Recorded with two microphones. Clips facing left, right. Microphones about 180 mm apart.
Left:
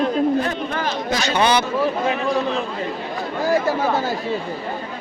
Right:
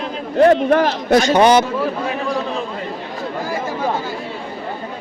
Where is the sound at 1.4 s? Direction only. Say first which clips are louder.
Right 4 dB; 45° right (ahead or behind).